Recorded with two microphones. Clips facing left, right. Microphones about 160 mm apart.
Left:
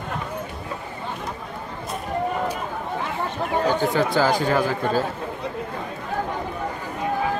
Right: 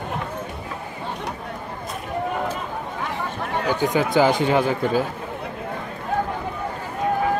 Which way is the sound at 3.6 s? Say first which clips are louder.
Right 1 dB; 15° right (ahead or behind).